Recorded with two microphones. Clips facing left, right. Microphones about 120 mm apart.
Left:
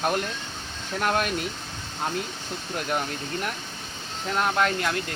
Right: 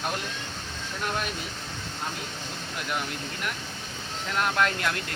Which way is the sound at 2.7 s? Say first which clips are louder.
Left 4 dB; 40° left (ahead or behind).